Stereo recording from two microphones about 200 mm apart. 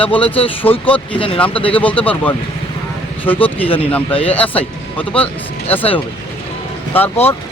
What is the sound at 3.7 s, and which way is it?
Speech, 30° left (ahead or behind).